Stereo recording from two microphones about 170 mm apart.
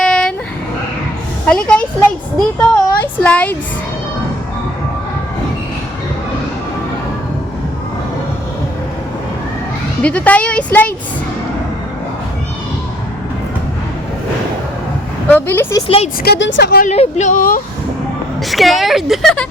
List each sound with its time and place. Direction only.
0.0 s vehicle: 5° left (ahead or behind)
1.5 s a sound: 5° left (ahead or behind)
10.0 s speech: 10° left (ahead or behind)
15.3 s a woman's voice: 10° left (ahead or behind)
16.2 s a woman's voice: 85° left
16.8 s speech: 40° left (ahead or behind)
18.4 s a woman's voice: centre (ahead or behind)